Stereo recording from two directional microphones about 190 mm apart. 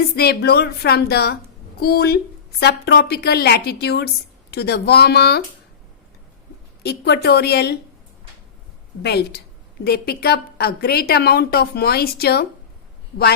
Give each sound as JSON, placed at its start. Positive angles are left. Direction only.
{"t": 0.2, "sound": "a woman's voice", "side_deg": 55}
{"t": 6.8, "sound": "a woman's voice", "side_deg": 60}
{"t": 9.0, "sound": "a woman's voice", "side_deg": 60}